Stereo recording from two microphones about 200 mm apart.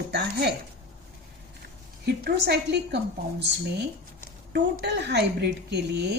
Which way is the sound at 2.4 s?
55° right (ahead or behind).